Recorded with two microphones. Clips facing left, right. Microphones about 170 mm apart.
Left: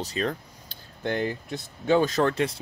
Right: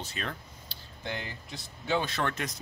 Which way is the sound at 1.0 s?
50° left (ahead or behind).